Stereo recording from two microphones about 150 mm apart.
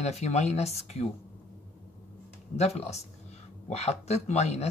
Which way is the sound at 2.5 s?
45° left (ahead or behind).